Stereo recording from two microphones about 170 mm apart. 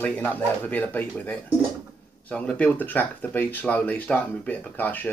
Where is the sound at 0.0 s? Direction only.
10° left (ahead or behind).